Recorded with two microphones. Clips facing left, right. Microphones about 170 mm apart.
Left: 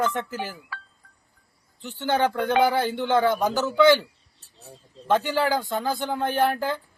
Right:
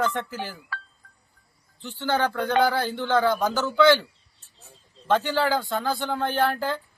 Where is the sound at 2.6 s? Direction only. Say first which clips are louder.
Left 2 dB; 20° left (ahead or behind).